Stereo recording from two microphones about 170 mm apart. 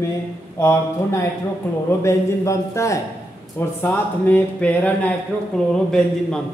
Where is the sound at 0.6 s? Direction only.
15° left (ahead or behind).